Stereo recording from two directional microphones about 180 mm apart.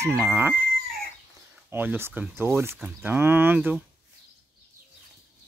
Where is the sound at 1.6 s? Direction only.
10° right (ahead or behind).